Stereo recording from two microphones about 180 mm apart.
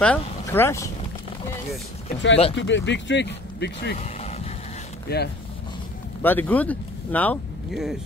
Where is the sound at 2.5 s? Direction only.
90° left; by 3.9 s 70° left (ahead or behind).